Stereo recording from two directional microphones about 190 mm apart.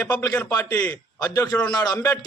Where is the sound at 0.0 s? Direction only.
20° left (ahead or behind).